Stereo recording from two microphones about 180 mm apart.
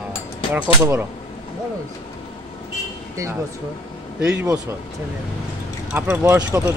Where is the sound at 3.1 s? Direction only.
15° right (ahead or behind).